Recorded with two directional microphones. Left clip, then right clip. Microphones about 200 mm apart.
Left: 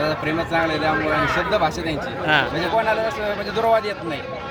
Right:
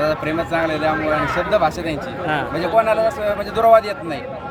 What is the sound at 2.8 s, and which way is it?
Speech, 15° right (ahead or behind).